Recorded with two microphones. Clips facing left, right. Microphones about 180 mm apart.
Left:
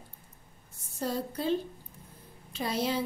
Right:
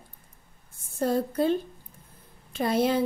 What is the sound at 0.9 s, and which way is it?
A woman's voice, 55° right (ahead or behind).